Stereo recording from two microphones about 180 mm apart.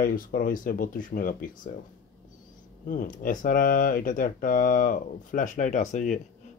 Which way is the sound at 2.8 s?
50° left (ahead or behind).